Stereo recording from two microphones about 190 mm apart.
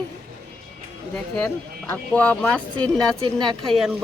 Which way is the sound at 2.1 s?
5° left (ahead or behind).